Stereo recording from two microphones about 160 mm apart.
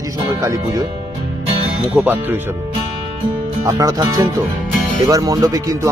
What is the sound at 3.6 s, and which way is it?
Speech, 20° right (ahead or behind).